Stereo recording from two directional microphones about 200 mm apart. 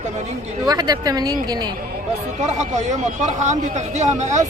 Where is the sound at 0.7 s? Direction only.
20° right (ahead or behind).